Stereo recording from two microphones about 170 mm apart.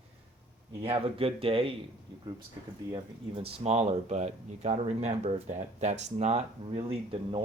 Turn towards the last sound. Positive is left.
turn(degrees=-35)  # may be behind; listen again after turning